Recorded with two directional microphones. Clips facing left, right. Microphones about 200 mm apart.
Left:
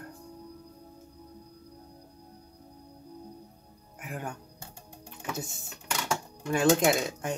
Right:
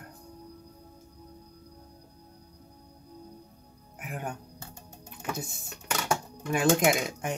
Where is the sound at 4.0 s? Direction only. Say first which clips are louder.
Even; 20° right (ahead or behind).